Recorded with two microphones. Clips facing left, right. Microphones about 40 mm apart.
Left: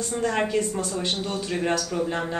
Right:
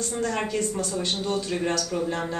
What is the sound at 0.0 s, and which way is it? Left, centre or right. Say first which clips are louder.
Speech: left 2 dB; centre.